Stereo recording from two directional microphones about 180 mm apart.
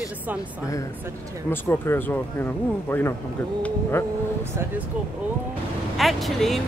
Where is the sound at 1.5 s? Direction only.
10° left (ahead or behind).